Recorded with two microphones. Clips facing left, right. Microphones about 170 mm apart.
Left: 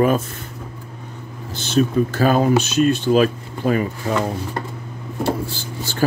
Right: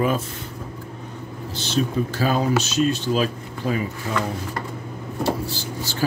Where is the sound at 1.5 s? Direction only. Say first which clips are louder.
Left 5 dB; 50° left (ahead or behind).